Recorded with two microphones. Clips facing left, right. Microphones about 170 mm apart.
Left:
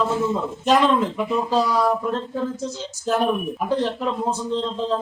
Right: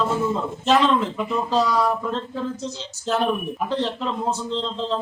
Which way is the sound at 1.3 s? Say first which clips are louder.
Right 1 dB; 10° left (ahead or behind).